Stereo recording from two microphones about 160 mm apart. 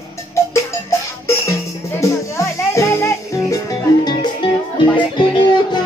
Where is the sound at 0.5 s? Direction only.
15° left (ahead or behind).